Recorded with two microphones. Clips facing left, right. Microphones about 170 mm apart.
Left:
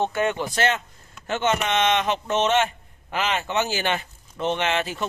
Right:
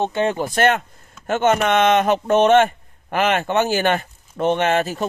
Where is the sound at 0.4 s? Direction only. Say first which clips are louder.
Right 6 dB; 55° right (ahead or behind).